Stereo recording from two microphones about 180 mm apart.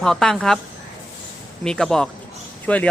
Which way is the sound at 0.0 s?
5° left (ahead or behind).